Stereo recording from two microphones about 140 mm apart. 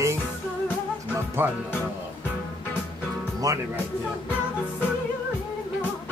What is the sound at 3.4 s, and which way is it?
Speech, 25° right (ahead or behind).